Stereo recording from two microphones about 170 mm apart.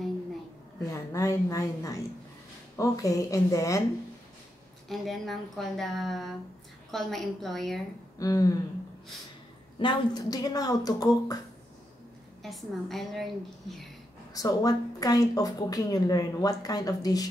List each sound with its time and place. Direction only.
0.8 s speech: 20° left (ahead or behind)
4.8 s speech: centre (ahead or behind)
8.2 s speech: 20° left (ahead or behind)
9.8 s speech: 25° left (ahead or behind)
12.4 s speech: centre (ahead or behind)
14.3 s speech: 20° left (ahead or behind)